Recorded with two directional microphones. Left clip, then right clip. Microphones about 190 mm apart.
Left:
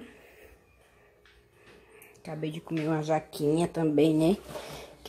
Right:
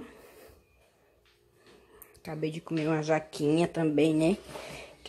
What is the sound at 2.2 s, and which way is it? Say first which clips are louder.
Speech: right 2 dB; 15° right (ahead or behind).